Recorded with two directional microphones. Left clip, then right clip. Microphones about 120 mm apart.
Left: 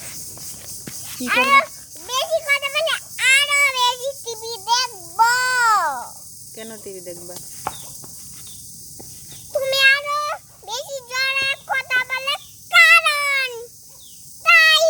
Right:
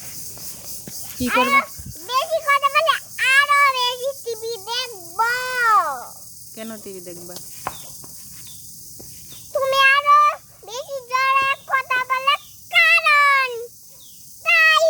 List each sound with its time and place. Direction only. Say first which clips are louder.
1.2 s speech: left 2 dB; centre (ahead or behind)
2.0 s child singing: right 1 dB; 15° right (ahead or behind)
6.6 s cricket: even; 30° right (ahead or behind)
7.7 s a sound: left 1 dB; 30° left (ahead or behind)
9.5 s cat: even; 15° right (ahead or behind)